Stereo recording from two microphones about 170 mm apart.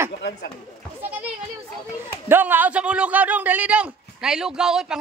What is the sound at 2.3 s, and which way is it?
A man's voice, 10° right (ahead or behind).